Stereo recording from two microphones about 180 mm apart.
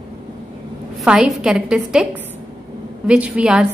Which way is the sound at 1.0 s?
5° right (ahead or behind).